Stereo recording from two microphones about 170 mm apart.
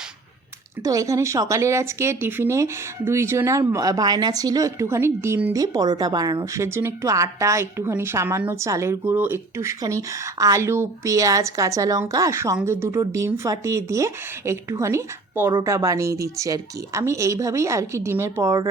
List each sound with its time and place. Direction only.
0.8 s speech: 20° right (ahead or behind)